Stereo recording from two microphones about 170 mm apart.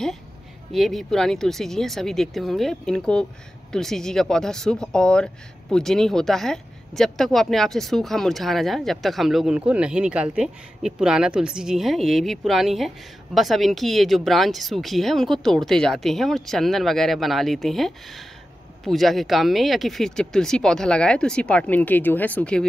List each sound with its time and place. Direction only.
0.7 s speech: centre (ahead or behind)